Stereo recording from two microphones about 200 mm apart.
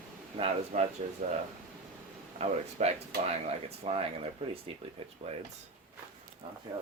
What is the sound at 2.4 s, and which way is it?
Speech, 35° right (ahead or behind).